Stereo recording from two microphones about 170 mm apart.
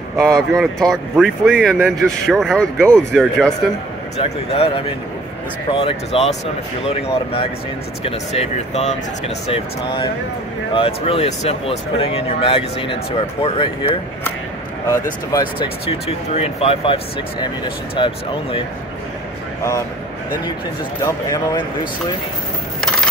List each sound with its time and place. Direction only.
0.2 s speech: centre (ahead or behind)
4.2 s speech: 35° left (ahead or behind)
10.7 s speech: 30° left (ahead or behind)
15.3 s speech: 25° left (ahead or behind)
21.0 s speech: 20° left (ahead or behind)